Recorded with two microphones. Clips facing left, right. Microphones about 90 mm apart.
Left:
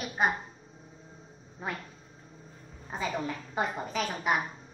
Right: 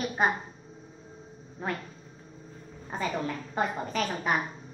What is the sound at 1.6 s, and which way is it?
Speech, 10° left (ahead or behind).